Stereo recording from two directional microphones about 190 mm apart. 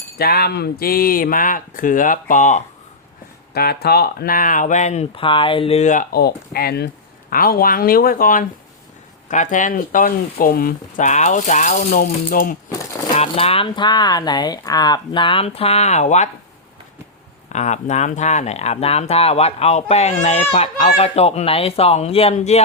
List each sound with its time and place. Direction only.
0.2 s speech: 55° left (ahead or behind)
3.5 s speech: 55° left (ahead or behind)
13.1 s speech: 30° left (ahead or behind)
17.5 s speech: 35° left (ahead or behind)